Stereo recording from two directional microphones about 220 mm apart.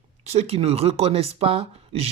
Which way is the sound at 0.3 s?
30° right (ahead or behind).